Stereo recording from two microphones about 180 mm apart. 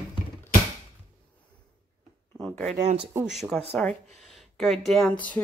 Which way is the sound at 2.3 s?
5° left (ahead or behind).